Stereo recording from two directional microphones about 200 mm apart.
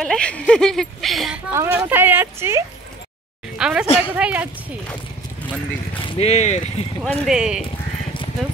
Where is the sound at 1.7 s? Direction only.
10° right (ahead or behind).